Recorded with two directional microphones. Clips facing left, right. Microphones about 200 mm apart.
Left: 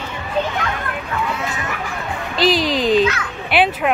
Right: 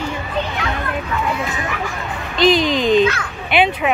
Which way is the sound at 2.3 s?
5° left (ahead or behind).